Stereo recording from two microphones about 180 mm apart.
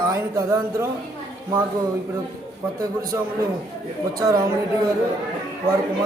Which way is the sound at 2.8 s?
20° right (ahead or behind).